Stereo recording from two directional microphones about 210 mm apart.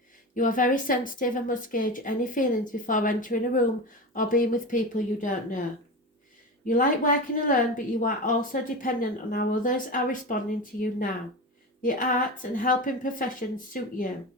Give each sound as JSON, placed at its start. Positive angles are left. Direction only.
{"t": 0.3, "sound": "a woman's voice", "side_deg": 40}
{"t": 6.7, "sound": "a woman's voice", "side_deg": 40}